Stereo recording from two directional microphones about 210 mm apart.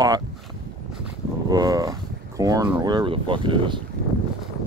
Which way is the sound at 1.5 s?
15° right (ahead or behind).